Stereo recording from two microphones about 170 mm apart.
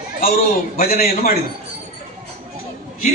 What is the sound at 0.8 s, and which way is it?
Speech, 60° left (ahead or behind).